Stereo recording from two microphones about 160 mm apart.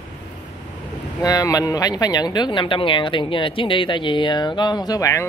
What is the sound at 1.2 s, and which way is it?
Speech, 20° left (ahead or behind).